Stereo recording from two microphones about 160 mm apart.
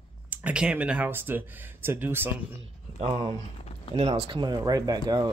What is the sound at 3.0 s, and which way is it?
Speech, 30° right (ahead or behind).